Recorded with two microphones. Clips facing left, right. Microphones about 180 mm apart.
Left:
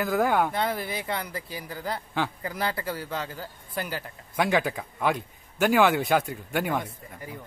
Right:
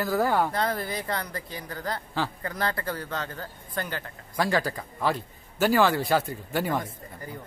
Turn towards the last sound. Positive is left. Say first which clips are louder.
# even
turn(degrees=5)  # may be behind; listen again after turning